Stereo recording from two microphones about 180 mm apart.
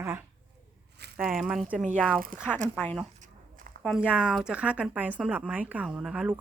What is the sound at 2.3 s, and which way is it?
Speech, 50° right (ahead or behind).